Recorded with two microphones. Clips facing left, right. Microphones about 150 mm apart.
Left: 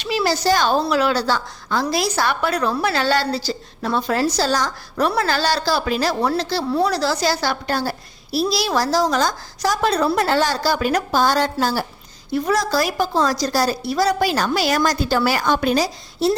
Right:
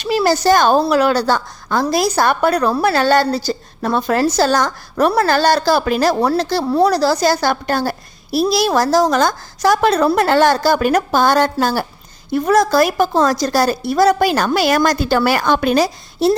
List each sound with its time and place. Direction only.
0.0 s a woman's voice: 45° right (ahead or behind); by 16.3 s 60° right (ahead or behind)